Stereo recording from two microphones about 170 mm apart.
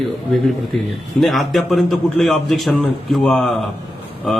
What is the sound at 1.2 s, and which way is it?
Speech, centre (ahead or behind).